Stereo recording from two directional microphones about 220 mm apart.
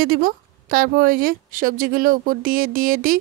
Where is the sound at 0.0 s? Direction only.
40° right (ahead or behind).